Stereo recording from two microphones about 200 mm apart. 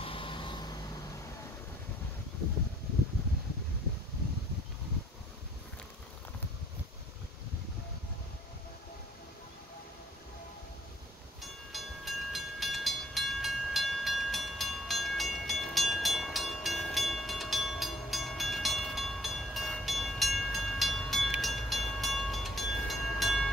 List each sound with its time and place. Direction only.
0.0 s vehicle: 25° left (ahead or behind)
11.7 s train: centre (ahead or behind)